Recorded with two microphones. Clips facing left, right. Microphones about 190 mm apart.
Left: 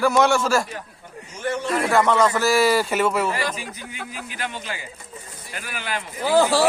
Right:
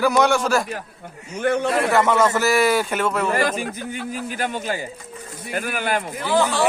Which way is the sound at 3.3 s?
50° right (ahead or behind).